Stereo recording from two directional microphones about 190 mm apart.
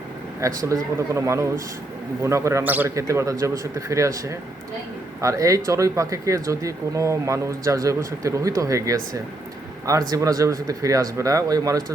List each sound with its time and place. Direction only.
0.7 s speech: 15° right (ahead or behind)
10.1 s speech: 20° right (ahead or behind)